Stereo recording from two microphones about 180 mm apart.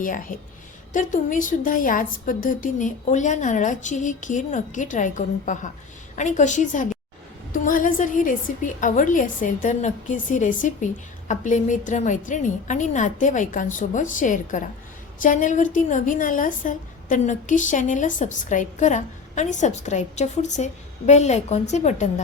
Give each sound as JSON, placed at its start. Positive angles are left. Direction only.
{"t": 0.0, "sound": "a woman's voice", "side_deg": 50}